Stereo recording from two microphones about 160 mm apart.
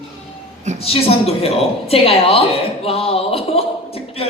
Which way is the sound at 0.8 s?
35° left (ahead or behind).